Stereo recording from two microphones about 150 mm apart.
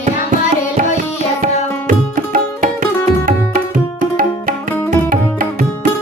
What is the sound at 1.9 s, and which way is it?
Music, 65° right (ahead or behind).